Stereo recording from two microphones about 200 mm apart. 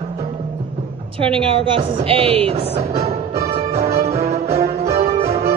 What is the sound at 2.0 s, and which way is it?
Music, 30° right (ahead or behind).